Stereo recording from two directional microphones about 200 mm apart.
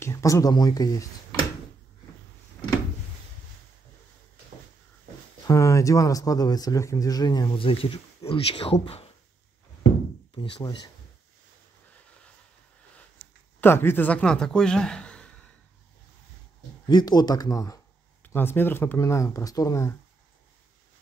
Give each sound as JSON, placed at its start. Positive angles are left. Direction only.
{"t": 0.0, "sound": "speech", "side_deg": 15}
{"t": 5.4, "sound": "speech", "side_deg": 15}
{"t": 10.3, "sound": "speech", "side_deg": 25}
{"t": 13.6, "sound": "a man's voice", "side_deg": 10}
{"t": 16.9, "sound": "speech", "side_deg": 20}